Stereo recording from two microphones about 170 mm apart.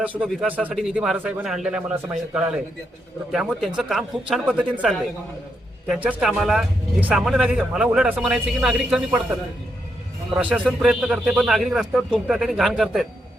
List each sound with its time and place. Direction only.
0.0 s speech: 5° right (ahead or behind)
10.3 s speech: 5° right (ahead or behind)